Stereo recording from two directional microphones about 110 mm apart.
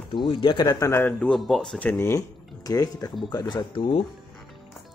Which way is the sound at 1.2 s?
5° left (ahead or behind).